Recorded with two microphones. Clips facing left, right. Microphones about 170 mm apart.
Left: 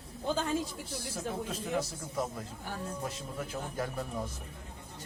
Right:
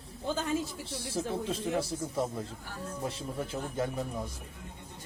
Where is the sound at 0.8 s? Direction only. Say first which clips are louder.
Right 3 dB; 30° right (ahead or behind).